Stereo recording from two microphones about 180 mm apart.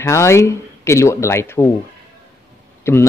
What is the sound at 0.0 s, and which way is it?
Speech, 15° left (ahead or behind).